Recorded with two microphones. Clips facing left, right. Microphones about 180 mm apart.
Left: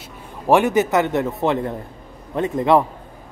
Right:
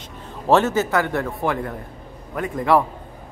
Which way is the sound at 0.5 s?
15° left (ahead or behind).